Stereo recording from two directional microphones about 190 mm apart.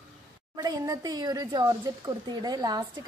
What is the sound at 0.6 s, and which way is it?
Speech, 20° right (ahead or behind).